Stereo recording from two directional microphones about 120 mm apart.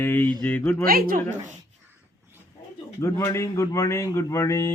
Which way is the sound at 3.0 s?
25° left (ahead or behind).